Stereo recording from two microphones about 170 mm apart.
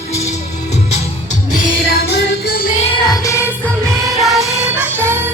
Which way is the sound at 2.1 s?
75° left (ahead or behind).